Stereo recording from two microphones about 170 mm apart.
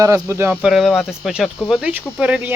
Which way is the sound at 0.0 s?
15° right (ahead or behind).